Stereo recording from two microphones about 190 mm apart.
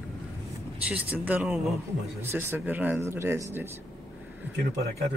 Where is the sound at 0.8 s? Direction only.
5° right (ahead or behind).